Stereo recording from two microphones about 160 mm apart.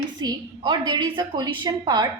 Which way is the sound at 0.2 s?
25° right (ahead or behind).